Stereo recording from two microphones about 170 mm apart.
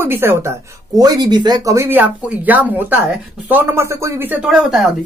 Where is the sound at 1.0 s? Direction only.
25° right (ahead or behind).